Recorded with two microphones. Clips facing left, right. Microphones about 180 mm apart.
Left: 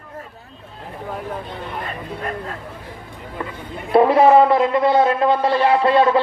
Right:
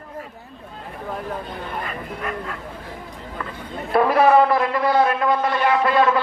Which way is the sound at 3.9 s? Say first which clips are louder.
Left 3 dB; 25° left (ahead or behind).